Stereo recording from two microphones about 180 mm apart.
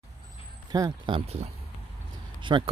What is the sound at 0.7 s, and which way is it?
Speech, 20° right (ahead or behind).